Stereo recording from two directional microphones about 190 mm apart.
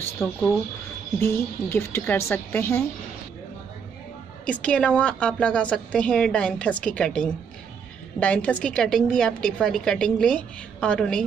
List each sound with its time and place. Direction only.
0.2 s speech: 15° left (ahead or behind)
4.5 s a woman's voice: 5° left (ahead or behind)